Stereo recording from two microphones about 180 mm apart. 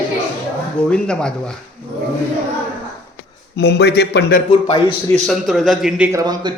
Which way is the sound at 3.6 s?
70° left (ahead or behind).